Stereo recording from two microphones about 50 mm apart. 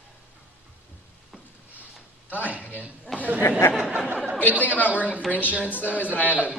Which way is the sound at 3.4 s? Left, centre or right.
Left.